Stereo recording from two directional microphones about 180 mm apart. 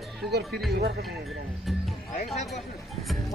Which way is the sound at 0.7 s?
60° right (ahead or behind).